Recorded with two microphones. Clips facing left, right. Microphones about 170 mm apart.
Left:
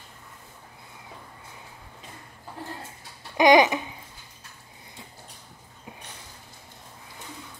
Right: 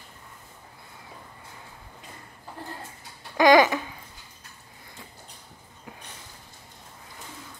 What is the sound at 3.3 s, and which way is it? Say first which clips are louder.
Babbling: even; 20° left (ahead or behind).